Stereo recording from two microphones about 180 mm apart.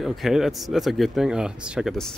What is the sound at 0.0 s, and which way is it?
Speech, centre (ahead or behind).